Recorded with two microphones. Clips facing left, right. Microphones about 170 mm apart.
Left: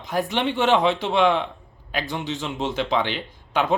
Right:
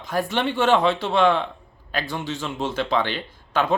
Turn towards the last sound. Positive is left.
turn(degrees=15)  # may be behind; listen again after turning